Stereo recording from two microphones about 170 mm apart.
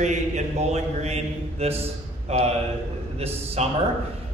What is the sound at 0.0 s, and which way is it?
A man's voice, 45° right (ahead or behind).